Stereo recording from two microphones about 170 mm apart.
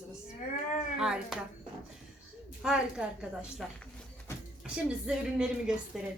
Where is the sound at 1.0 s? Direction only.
5° right (ahead or behind).